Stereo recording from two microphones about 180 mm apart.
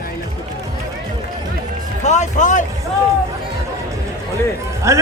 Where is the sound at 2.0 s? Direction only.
40° left (ahead or behind).